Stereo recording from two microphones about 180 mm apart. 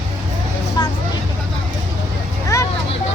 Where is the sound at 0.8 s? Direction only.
25° left (ahead or behind).